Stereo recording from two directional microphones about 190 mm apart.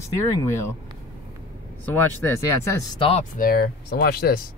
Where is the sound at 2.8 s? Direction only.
30° left (ahead or behind).